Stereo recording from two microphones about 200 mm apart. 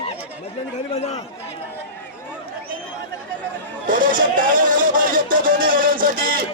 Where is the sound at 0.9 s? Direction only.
35° left (ahead or behind).